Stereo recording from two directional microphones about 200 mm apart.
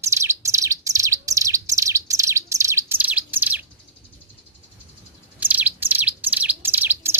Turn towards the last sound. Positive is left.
turn(degrees=-10)  # may be behind; listen again after turning